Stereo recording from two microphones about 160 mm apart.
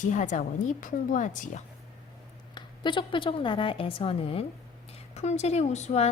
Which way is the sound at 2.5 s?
30° left (ahead or behind).